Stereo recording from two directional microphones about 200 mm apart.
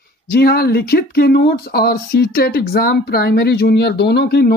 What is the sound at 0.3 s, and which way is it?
Speech, 50° left (ahead or behind).